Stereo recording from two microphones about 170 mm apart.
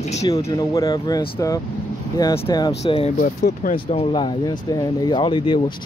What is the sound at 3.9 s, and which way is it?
Speech, 30° left (ahead or behind).